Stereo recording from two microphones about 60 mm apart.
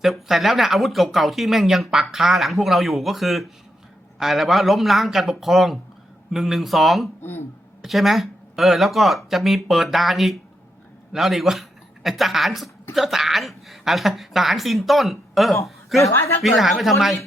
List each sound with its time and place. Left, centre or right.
0.0 s speech: centre
7.2 s speech: left
7.8 s a man's voice: centre